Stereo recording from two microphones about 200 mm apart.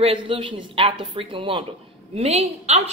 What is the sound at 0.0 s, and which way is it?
A woman's voice, 25° right (ahead or behind).